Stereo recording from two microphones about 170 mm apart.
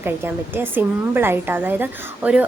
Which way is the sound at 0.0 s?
10° right (ahead or behind).